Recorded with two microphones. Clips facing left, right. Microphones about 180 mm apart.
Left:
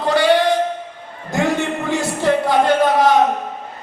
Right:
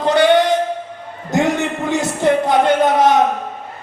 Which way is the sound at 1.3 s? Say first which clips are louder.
Right 2 dB; 20° right (ahead or behind).